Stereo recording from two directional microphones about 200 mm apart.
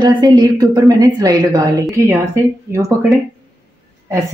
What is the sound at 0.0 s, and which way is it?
Speech, 20° right (ahead or behind).